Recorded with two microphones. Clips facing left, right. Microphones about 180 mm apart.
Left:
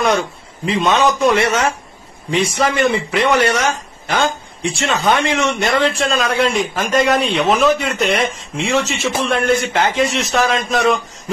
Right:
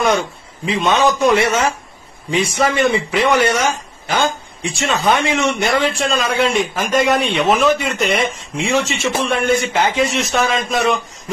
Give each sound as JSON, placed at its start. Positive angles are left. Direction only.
{"t": 0.0, "sound": "speech", "side_deg": 0}